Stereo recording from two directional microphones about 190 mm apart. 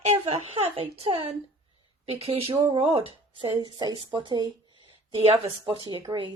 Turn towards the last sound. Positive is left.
turn(degrees=-25)  # may be behind; listen again after turning